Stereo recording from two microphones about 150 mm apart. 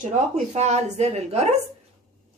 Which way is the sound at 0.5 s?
50° right (ahead or behind).